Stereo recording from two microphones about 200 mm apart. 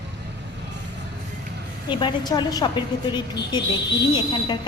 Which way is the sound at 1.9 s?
25° left (ahead or behind).